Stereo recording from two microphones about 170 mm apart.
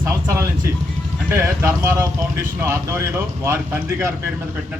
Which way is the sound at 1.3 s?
15° right (ahead or behind).